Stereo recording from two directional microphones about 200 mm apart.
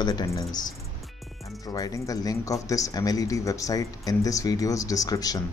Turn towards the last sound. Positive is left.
turn(degrees=20)  # may be behind; listen again after turning